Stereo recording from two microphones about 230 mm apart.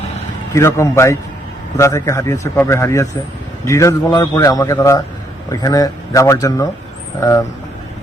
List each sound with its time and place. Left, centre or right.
0.5 s speech: centre